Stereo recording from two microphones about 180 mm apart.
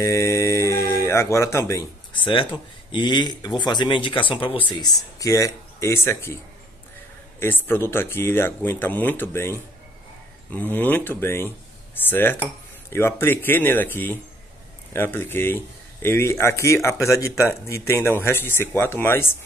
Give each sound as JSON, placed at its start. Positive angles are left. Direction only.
{"t": 0.0, "sound": "speech", "side_deg": 15}
{"t": 10.7, "sound": "speech", "side_deg": 10}